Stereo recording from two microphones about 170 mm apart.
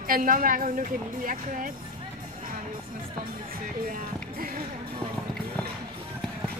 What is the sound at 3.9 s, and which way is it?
Music, 55° right (ahead or behind).